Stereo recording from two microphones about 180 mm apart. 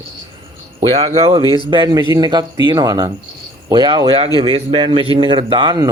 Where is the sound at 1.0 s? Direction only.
35° right (ahead or behind).